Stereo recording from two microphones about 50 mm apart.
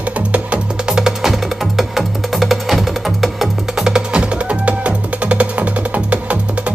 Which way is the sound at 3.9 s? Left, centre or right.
Centre.